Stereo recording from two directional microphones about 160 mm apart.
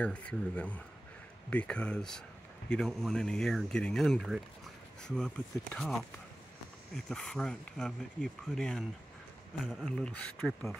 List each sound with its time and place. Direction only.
0.0 s speech: 5° left (ahead or behind)
7.1 s speech: 5° left (ahead or behind)